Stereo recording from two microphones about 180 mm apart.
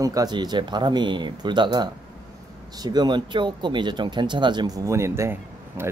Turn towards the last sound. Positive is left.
turn(degrees=-15)  # may be behind; listen again after turning